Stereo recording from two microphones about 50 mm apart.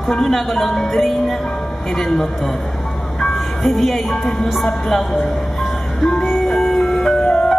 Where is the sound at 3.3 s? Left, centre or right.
Centre.